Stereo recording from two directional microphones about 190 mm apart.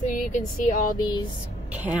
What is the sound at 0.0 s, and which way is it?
Speech, 40° left (ahead or behind).